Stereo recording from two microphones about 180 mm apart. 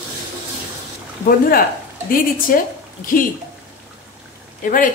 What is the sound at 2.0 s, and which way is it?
Speech, 50° left (ahead or behind).